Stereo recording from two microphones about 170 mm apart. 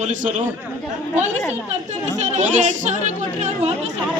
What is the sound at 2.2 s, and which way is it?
Speech, 45° right (ahead or behind).